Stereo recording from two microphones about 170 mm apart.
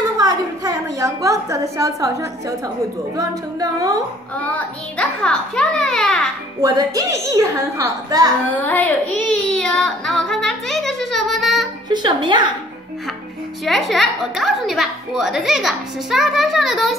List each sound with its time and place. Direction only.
0.2 s a woman's voice: 20° right (ahead or behind)
4.4 s a woman's voice: 10° left (ahead or behind)
6.6 s a woman's voice: 20° right (ahead or behind)
8.5 s a woman's voice: 10° left (ahead or behind)
11.9 s a woman's voice: 25° right (ahead or behind)
13.7 s a woman's voice: centre (ahead or behind)